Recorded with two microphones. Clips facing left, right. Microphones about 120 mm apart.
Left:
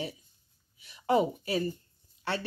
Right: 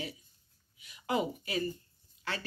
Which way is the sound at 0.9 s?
35° left (ahead or behind).